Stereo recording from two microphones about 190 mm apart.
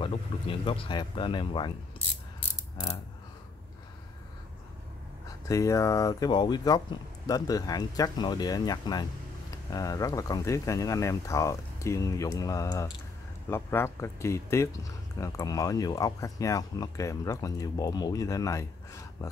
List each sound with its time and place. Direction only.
0.0 s speech: 30° left (ahead or behind)
5.5 s speech: 15° left (ahead or behind)